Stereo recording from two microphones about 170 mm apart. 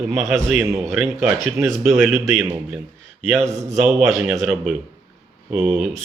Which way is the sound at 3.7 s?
Centre (ahead or behind).